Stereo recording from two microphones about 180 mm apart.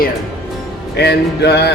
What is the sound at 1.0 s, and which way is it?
Music, 65° left (ahead or behind).